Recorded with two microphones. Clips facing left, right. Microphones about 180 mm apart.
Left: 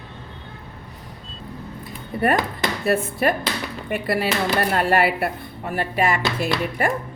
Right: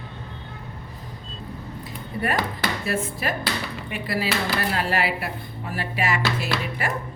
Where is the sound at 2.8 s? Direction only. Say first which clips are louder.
Left 10 dB; 55° left (ahead or behind).